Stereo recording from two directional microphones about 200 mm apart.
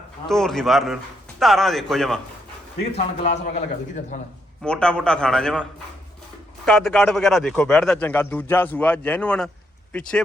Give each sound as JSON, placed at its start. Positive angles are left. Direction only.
{"t": 0.3, "sound": "a man's voice", "side_deg": 0}
{"t": 2.9, "sound": "a man's voice", "side_deg": 30}
{"t": 4.6, "sound": "a man's voice", "side_deg": 5}
{"t": 6.7, "sound": "a man's voice", "side_deg": 5}